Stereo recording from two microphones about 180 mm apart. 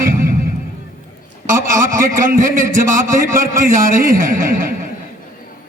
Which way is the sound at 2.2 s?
50° right (ahead or behind).